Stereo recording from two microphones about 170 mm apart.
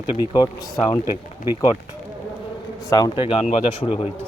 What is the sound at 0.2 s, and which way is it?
Speech, 25° left (ahead or behind).